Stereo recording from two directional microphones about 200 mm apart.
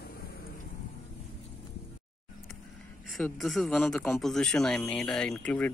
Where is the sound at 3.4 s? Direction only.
Centre (ahead or behind).